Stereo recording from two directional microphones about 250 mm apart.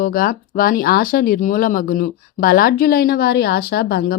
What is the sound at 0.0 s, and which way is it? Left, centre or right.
Speech, left.